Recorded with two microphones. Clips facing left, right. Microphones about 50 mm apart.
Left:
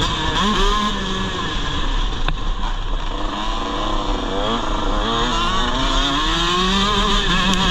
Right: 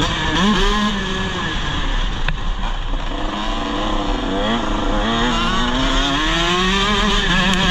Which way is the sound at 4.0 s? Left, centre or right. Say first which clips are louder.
Right 2 dB; right.